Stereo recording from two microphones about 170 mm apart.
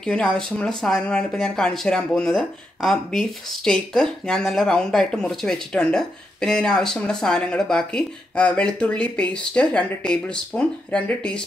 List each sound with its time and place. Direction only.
0.0 s speech: 5° left (ahead or behind)